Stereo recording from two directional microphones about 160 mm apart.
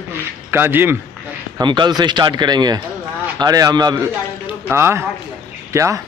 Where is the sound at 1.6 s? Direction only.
25° right (ahead or behind).